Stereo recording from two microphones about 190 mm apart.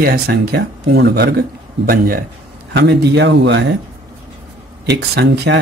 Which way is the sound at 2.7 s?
60° right (ahead or behind).